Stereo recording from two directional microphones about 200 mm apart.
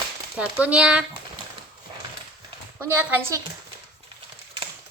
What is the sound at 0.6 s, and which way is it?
Speech, 5° right (ahead or behind).